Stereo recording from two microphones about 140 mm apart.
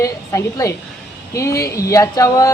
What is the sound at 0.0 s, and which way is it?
A woman's voice, 25° left (ahead or behind).